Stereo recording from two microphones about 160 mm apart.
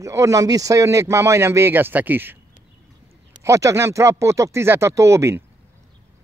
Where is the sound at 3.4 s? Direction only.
20° right (ahead or behind).